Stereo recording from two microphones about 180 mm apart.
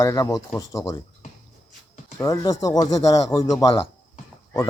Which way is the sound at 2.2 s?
20° left (ahead or behind).